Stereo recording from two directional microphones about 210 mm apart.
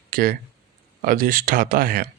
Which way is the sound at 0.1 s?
45° right (ahead or behind).